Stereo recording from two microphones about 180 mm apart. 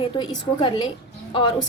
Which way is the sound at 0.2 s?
25° left (ahead or behind).